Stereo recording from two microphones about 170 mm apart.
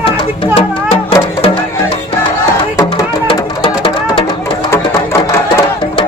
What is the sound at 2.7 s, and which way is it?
Music, 25° left (ahead or behind).